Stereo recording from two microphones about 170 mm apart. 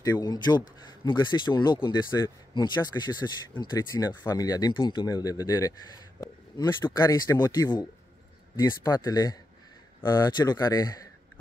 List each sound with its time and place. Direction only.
0.0 s speech: 20° left (ahead or behind)